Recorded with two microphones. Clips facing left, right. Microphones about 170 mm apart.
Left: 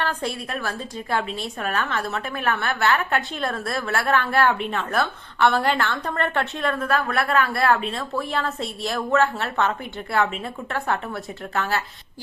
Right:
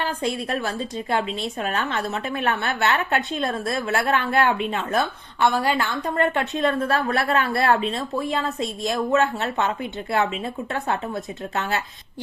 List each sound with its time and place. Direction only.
0.6 s a woman's voice: 20° right (ahead or behind)